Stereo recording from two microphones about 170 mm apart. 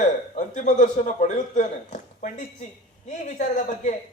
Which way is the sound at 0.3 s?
45° left (ahead or behind).